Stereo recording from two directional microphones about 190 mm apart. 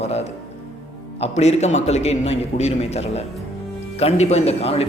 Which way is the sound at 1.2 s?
35° left (ahead or behind).